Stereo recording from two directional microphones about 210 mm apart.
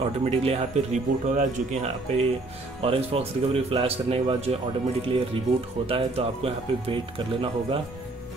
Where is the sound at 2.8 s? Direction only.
30° right (ahead or behind).